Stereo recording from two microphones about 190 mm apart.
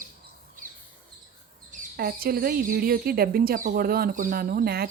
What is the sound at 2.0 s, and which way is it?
Speech, 50° right (ahead or behind).